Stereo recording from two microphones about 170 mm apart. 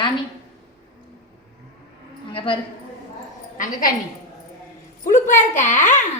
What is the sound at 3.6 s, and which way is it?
Speech, 55° left (ahead or behind).